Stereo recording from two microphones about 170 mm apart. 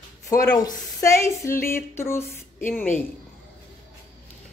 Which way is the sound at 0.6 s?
20° left (ahead or behind).